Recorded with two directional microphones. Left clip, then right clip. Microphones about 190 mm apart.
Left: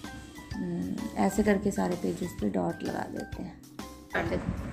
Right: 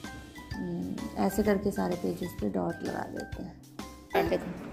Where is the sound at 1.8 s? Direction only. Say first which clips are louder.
Left 1 dB; centre (ahead or behind).